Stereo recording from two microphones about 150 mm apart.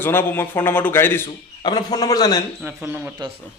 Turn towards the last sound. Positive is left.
turn(degrees=-15)  # may be behind; listen again after turning